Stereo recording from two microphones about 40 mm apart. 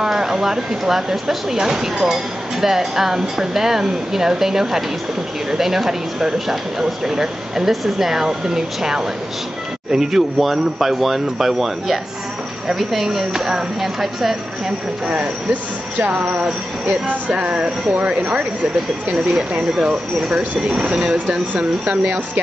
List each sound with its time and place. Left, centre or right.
0.0 s speech: centre
16.1 s speech: right
19.8 s speech: right